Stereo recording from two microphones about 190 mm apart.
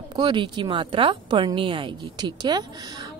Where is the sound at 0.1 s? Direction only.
25° right (ahead or behind).